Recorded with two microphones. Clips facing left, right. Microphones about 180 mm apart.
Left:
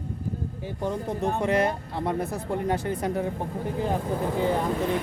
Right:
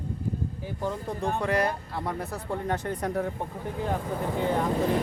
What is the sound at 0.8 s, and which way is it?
Speech, 20° left (ahead or behind).